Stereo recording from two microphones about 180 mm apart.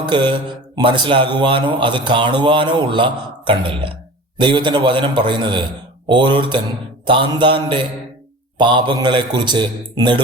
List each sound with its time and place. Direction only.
0.0 s a man's voice: 25° right (ahead or behind)